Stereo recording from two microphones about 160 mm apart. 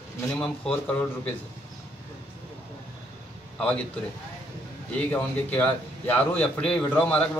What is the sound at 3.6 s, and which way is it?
Speech, 5° left (ahead or behind).